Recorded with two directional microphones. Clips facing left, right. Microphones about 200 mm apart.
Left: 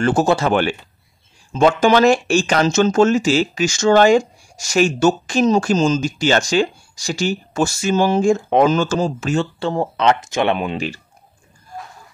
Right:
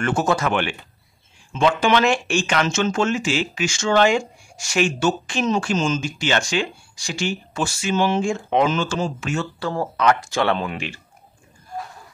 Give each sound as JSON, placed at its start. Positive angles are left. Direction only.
{"t": 0.0, "sound": "speech", "side_deg": 30}